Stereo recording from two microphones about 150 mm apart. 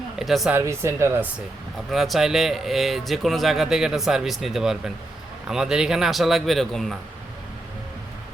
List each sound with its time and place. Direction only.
0.2 s speech: centre (ahead or behind)
0.5 s speech: 20° right (ahead or behind)
1.9 s a man's voice: centre (ahead or behind)